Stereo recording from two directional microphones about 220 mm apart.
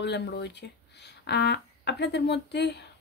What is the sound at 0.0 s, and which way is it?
Speech, 50° left (ahead or behind).